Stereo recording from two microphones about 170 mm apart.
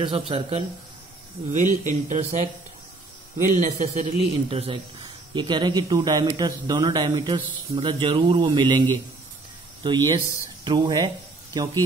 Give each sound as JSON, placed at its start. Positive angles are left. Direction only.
{"t": 0.3, "sound": "speech", "side_deg": -35}
{"t": 1.5, "sound": "a man's voice", "side_deg": -45}
{"t": 5.3, "sound": "speech", "side_deg": -25}